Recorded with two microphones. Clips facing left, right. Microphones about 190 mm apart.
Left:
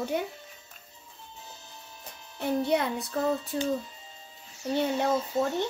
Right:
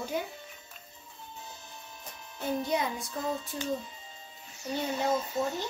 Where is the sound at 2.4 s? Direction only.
65° left (ahead or behind).